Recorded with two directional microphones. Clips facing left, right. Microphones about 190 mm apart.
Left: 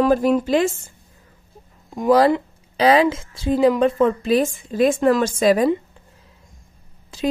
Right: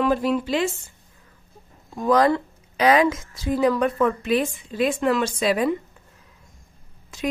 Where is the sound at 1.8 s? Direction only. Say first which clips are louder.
Left 4 dB; 20° left (ahead or behind).